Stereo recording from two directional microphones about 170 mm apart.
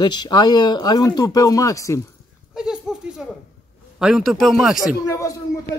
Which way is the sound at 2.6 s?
5° right (ahead or behind).